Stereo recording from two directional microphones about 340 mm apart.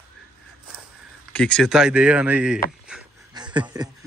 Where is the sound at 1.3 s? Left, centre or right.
Centre.